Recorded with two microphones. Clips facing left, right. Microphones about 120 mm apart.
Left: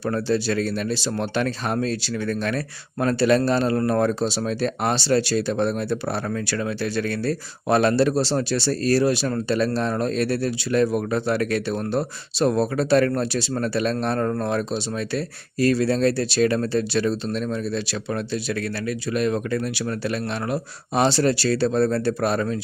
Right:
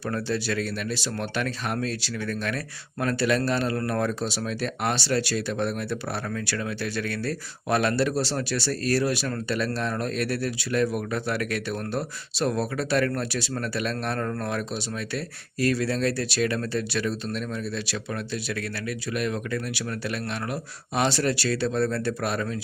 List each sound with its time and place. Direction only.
0.0 s speech: 30° left (ahead or behind)